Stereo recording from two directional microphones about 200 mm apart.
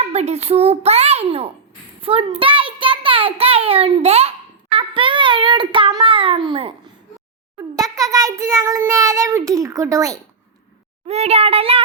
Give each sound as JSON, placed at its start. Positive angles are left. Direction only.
{"t": 0.0, "sound": "a child's voice", "side_deg": -30}
{"t": 7.8, "sound": "child singing", "side_deg": -15}
{"t": 11.0, "sound": "a child's voice", "side_deg": -30}